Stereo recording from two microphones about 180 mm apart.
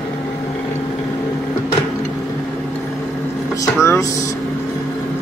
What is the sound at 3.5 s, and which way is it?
Vehicle, 15° left (ahead or behind).